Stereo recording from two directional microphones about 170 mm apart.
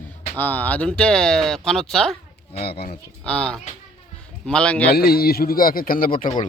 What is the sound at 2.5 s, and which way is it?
Speech, 65° left (ahead or behind).